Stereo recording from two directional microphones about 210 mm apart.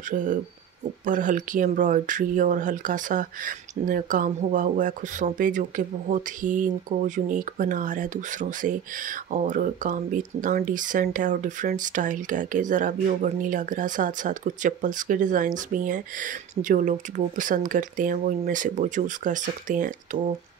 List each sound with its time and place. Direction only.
0.1 s speech: 40° right (ahead or behind)